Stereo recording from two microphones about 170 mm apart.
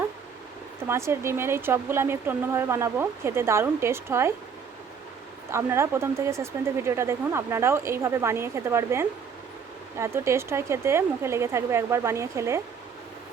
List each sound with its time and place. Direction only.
0.9 s speech: 15° right (ahead or behind)
5.5 s speech: 15° right (ahead or behind)